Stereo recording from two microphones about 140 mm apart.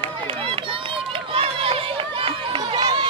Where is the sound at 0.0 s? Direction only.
40° right (ahead or behind).